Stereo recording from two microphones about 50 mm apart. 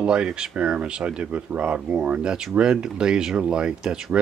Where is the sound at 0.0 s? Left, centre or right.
Centre.